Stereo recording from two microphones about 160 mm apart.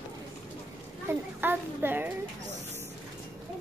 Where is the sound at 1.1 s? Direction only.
15° right (ahead or behind).